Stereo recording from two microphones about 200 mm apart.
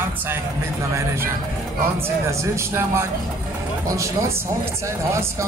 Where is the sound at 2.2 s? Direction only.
15° right (ahead or behind).